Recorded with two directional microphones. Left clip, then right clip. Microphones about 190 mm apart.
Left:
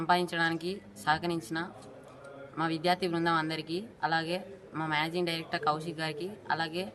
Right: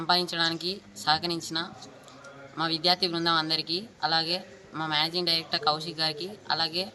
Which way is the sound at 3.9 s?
5° left (ahead or behind).